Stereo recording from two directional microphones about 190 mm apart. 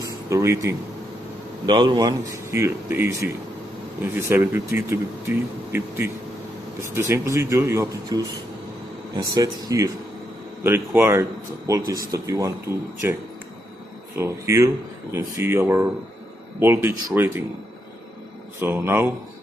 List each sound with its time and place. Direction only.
0.0 s speech: 15° right (ahead or behind)
14.1 s speech: 15° right (ahead or behind)
18.6 s speech: 10° right (ahead or behind)